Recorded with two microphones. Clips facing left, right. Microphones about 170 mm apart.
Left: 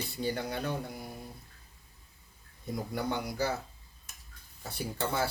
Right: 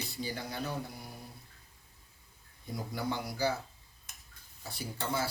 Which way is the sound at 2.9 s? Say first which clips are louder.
Left 2 dB; 60° left (ahead or behind).